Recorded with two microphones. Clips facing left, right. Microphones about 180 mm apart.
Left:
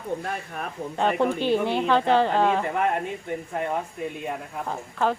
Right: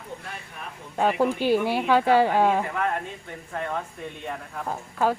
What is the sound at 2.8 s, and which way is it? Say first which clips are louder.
Speech: left 3 dB; 20° left (ahead or behind).